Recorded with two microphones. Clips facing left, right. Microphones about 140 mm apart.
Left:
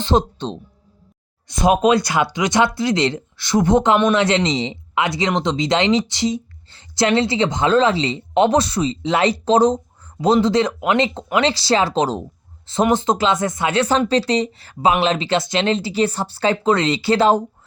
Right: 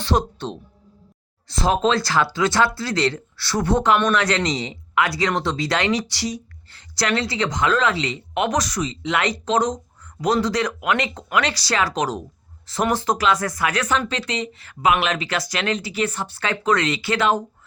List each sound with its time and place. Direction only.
0.0 s speech: 20° left (ahead or behind)
1.6 s speech: 20° left (ahead or behind)